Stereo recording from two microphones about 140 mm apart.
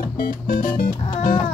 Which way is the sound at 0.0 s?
90° left.